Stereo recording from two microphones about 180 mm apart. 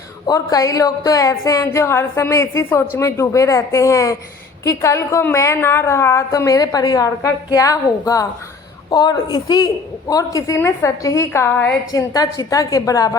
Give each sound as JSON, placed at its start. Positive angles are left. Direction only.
{"t": 0.3, "sound": "a woman's voice", "side_deg": 20}